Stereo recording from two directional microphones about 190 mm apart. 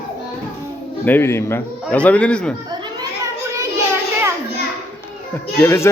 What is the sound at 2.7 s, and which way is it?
Children playing, 20° right (ahead or behind).